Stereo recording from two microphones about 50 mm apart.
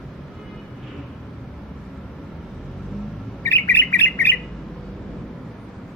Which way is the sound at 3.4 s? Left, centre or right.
Left.